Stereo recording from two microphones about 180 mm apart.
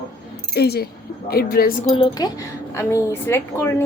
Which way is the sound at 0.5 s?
65° left (ahead or behind).